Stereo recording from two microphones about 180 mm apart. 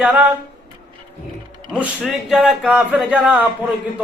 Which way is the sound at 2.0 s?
Centre (ahead or behind).